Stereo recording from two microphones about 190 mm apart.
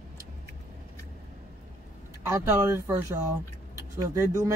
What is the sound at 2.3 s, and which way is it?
Speech, 15° right (ahead or behind).